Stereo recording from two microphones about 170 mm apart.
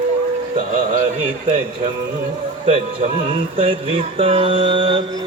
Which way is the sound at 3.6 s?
30° right (ahead or behind).